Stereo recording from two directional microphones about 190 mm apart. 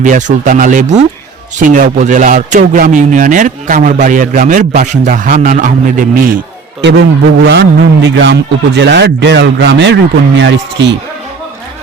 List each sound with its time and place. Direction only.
0.0 s a man's voice: 40° right (ahead or behind)
7.4 s speech: 65° right (ahead or behind)